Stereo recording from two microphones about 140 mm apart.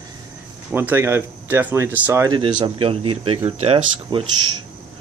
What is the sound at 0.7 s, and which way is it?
Speech, 15° right (ahead or behind).